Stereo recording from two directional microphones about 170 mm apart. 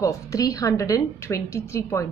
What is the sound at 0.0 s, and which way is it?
A woman's voice, 20° left (ahead or behind).